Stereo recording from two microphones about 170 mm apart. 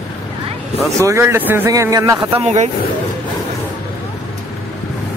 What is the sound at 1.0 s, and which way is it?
A man's voice, 15° right (ahead or behind).